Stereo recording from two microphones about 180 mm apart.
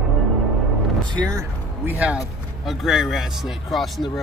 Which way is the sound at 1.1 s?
20° right (ahead or behind).